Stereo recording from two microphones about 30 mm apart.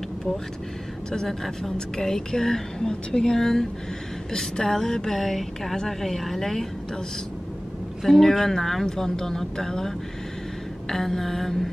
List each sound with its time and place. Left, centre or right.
1.2 s a woman's voice: centre
8.1 s a woman's voice: centre